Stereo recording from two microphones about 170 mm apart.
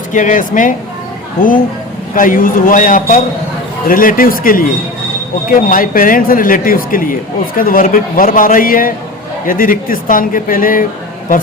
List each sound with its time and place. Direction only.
0.1 s a man's voice: 50° left (ahead or behind)